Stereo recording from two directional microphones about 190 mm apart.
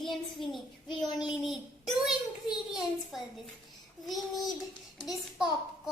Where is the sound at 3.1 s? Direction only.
Centre (ahead or behind).